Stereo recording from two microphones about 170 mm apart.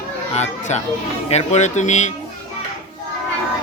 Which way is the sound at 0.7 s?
40° left (ahead or behind).